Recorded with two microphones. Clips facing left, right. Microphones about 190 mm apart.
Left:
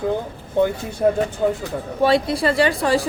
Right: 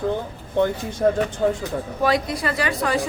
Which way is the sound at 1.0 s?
10° left (ahead or behind).